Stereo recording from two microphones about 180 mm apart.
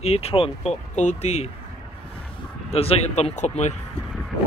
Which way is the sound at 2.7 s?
35° left (ahead or behind).